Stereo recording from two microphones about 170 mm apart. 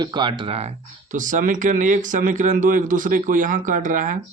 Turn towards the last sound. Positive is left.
turn(degrees=-50)  # may be behind; listen again after turning